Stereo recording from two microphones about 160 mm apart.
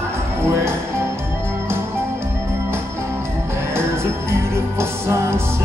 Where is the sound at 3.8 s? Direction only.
15° right (ahead or behind).